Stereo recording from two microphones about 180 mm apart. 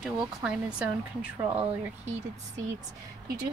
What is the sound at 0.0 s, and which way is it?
Speech, 5° right (ahead or behind).